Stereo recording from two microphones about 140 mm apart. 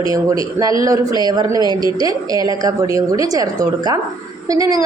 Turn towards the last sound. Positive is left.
turn(degrees=-25)  # may be behind; listen again after turning